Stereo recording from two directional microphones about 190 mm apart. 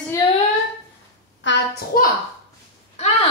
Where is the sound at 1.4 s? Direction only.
70° left (ahead or behind).